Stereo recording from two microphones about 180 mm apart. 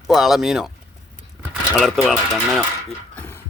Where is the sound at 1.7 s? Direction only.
Centre (ahead or behind).